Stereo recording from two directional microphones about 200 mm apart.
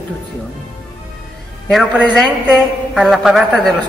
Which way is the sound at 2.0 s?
Centre (ahead or behind).